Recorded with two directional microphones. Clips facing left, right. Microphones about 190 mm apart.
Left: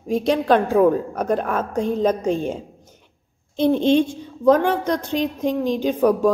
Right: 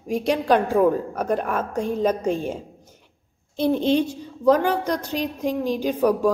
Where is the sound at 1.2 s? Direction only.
30° left (ahead or behind).